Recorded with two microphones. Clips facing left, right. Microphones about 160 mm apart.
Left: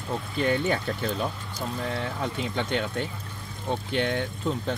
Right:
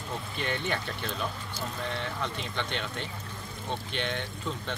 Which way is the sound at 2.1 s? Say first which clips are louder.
Left 5 dB; 45° left (ahead or behind).